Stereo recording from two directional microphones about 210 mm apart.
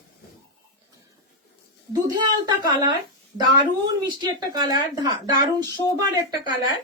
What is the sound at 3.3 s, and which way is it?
A woman's voice, 20° right (ahead or behind).